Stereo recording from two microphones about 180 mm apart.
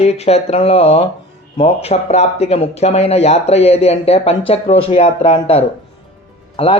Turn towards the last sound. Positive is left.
turn(degrees=30)  # may be behind; listen again after turning